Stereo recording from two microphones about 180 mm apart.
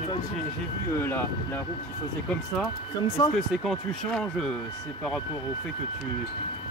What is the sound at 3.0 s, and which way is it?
Speech, 25° left (ahead or behind).